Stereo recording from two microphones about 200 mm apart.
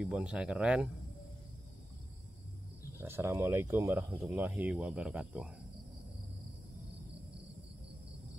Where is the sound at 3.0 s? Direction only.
10° right (ahead or behind).